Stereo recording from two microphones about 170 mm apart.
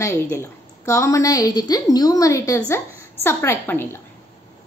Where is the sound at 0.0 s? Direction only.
15° left (ahead or behind).